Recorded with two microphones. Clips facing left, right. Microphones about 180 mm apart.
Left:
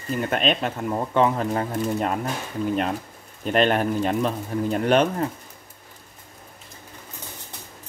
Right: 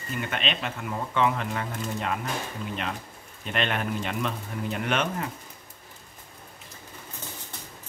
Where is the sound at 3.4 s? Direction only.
40° left (ahead or behind).